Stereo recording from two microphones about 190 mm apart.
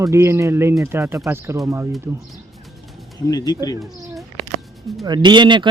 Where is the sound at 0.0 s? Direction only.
15° right (ahead or behind).